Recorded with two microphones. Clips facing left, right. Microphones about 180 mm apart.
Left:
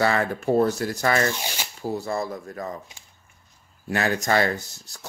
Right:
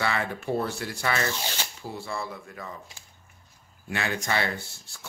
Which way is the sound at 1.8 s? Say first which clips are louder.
Left 9 dB; 40° left (ahead or behind).